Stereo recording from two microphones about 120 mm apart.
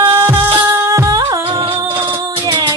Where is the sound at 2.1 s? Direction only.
40° right (ahead or behind).